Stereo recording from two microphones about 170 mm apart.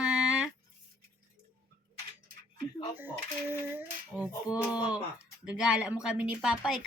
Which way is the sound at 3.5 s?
10° right (ahead or behind).